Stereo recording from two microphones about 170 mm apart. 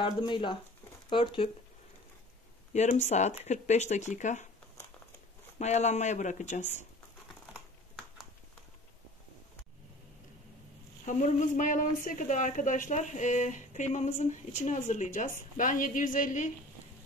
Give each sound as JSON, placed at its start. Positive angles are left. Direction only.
{"t": 0.0, "sound": "speech", "side_deg": 30}
{"t": 2.7, "sound": "speech", "side_deg": 40}
{"t": 5.6, "sound": "speech", "side_deg": 40}
{"t": 7.5, "sound": "computer keyboard", "side_deg": 0}
{"t": 11.1, "sound": "speech", "side_deg": 45}